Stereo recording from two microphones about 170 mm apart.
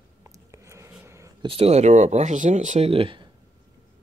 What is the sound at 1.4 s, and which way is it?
Speech, 35° right (ahead or behind).